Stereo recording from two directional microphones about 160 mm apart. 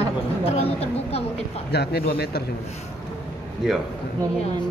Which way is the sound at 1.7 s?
85° left.